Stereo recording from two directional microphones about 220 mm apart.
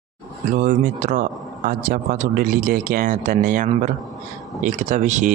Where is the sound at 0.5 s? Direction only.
35° right (ahead or behind).